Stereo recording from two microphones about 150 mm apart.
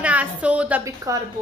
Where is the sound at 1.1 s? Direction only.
20° right (ahead or behind).